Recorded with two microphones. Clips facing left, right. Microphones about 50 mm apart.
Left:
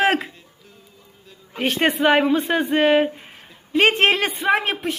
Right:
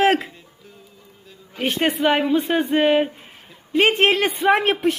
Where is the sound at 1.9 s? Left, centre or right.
Left.